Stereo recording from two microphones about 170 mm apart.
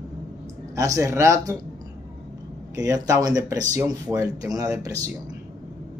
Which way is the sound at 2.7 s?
20° right (ahead or behind).